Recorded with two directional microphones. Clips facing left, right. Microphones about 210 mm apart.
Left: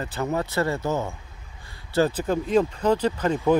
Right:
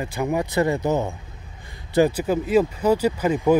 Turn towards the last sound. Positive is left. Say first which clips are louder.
# right 2 dB
turn(degrees=-10)  # may be behind; listen again after turning